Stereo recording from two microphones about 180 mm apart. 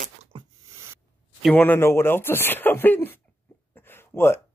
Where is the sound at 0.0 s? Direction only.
40° right (ahead or behind).